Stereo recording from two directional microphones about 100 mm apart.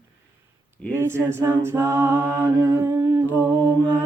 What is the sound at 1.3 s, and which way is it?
Music, 25° right (ahead or behind).